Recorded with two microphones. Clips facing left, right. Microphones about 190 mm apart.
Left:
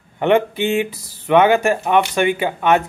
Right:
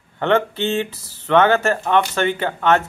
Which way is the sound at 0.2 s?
15° left (ahead or behind).